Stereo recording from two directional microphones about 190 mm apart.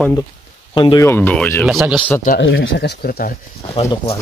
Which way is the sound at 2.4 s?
75° left (ahead or behind).